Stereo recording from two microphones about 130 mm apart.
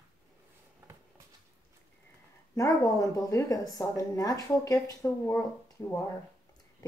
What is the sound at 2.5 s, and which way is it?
Speech, 25° left (ahead or behind).